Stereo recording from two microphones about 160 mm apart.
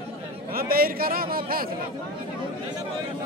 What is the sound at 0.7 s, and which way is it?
Speech, 65° right (ahead or behind).